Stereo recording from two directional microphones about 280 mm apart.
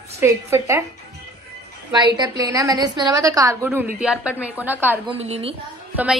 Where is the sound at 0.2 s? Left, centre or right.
Centre.